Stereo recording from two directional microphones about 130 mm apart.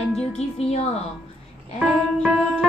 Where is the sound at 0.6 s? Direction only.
55° left (ahead or behind).